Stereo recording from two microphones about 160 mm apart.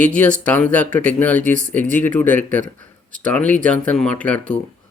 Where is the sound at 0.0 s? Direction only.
10° left (ahead or behind).